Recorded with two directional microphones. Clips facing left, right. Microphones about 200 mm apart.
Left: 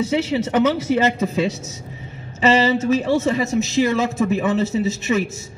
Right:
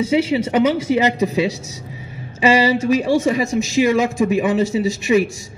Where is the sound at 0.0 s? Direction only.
10° right (ahead or behind).